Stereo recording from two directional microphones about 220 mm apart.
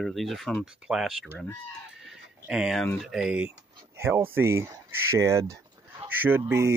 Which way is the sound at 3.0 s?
5° right (ahead or behind).